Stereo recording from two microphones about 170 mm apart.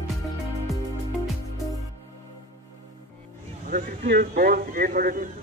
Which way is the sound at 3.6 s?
50° right (ahead or behind).